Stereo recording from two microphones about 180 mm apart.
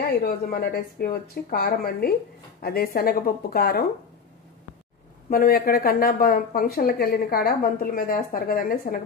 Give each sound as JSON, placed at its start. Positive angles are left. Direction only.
{"t": 0.0, "sound": "speech", "side_deg": 60}
{"t": 5.3, "sound": "speech", "side_deg": 55}